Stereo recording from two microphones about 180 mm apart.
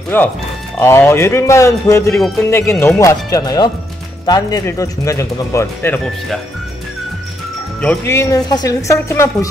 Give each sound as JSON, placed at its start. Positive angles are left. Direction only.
{"t": 0.1, "sound": "speech", "side_deg": 10}
{"t": 2.1, "sound": "speech", "side_deg": 0}
{"t": 2.5, "sound": "speech", "side_deg": 15}
{"t": 7.8, "sound": "speech", "side_deg": 10}